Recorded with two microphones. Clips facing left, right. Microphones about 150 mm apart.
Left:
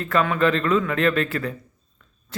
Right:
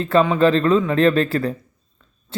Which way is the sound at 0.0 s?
30° right (ahead or behind).